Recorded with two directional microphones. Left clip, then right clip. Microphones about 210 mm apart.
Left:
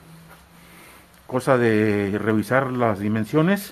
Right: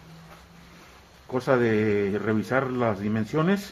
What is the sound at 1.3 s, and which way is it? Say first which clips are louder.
Speech: left 4 dB; 50° left (ahead or behind).